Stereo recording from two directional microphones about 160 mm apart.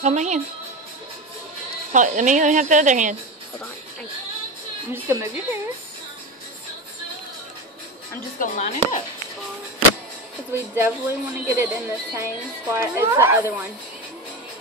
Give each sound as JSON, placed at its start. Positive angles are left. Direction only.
{"t": 0.0, "sound": "speech", "side_deg": -45}
{"t": 1.9, "sound": "speech", "side_deg": -50}
{"t": 4.9, "sound": "a woman's voice", "side_deg": -15}
{"t": 8.4, "sound": "speech", "side_deg": 45}
{"t": 10.5, "sound": "a woman's voice", "side_deg": -15}